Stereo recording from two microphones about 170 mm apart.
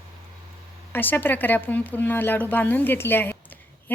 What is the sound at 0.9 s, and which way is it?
Speech, 10° left (ahead or behind).